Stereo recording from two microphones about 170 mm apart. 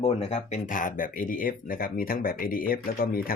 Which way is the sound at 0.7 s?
55° left (ahead or behind).